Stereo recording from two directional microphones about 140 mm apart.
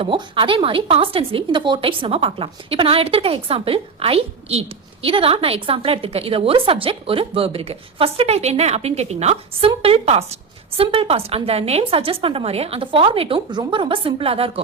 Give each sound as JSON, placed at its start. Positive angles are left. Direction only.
{"t": 0.0, "sound": "a woman's voice", "side_deg": -40}